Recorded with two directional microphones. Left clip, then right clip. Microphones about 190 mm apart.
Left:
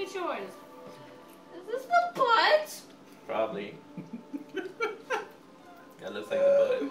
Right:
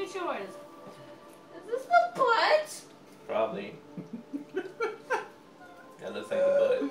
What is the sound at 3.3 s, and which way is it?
Speech, 20° left (ahead or behind).